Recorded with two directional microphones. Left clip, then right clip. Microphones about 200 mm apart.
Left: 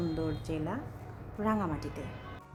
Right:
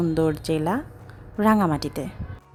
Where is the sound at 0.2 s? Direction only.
50° right (ahead or behind).